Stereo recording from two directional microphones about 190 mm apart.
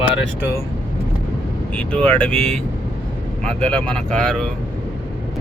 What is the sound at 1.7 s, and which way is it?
Speech, 5° left (ahead or behind).